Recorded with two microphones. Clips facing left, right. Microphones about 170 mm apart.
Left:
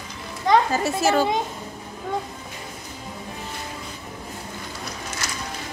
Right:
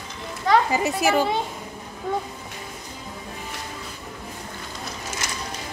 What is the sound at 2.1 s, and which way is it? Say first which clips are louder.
Speech: right 1 dB; centre (ahead or behind).